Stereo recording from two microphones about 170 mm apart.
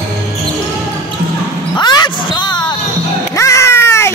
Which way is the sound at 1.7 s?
25° left (ahead or behind).